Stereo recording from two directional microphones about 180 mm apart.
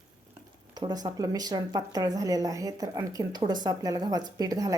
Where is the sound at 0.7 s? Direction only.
20° right (ahead or behind).